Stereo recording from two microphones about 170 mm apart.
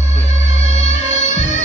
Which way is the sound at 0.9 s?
45° left (ahead or behind).